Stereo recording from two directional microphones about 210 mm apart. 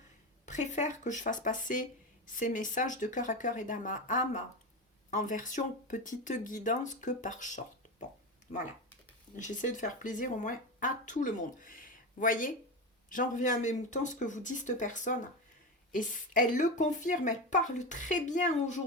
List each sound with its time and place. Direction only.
0.4 s speech: 35° left (ahead or behind)
9.3 s speech: 35° left (ahead or behind)